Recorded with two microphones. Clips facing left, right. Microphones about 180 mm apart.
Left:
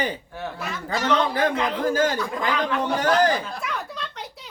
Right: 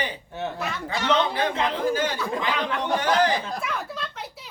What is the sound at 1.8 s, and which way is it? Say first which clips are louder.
Speech: left 5 dB; 45° left (ahead or behind).